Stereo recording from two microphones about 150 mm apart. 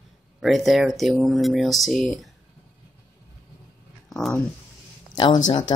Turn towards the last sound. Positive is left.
turn(degrees=30)  # may be behind; listen again after turning